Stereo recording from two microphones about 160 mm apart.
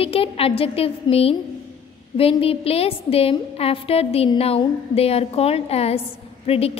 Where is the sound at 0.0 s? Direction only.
35° left (ahead or behind).